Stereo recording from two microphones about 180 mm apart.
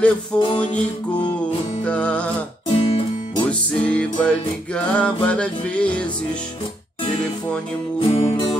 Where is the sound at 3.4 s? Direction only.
5° left (ahead or behind).